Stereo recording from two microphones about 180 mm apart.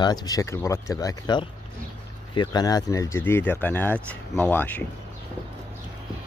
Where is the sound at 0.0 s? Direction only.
20° left (ahead or behind).